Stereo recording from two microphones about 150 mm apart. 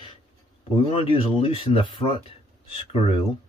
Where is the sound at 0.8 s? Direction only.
35° left (ahead or behind).